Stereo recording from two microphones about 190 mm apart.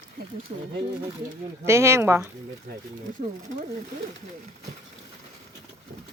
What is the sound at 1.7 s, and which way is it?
Speech, 15° right (ahead or behind).